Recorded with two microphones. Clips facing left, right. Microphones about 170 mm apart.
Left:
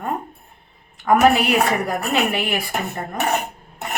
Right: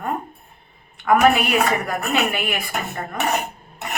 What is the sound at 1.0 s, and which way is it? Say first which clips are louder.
A woman's voice: left 1 dB; 30° left (ahead or behind).